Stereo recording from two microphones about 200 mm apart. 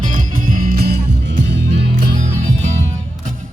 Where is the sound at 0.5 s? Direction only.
50° right (ahead or behind).